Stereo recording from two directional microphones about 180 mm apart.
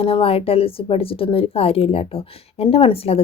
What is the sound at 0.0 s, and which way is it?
Speech, 30° left (ahead or behind).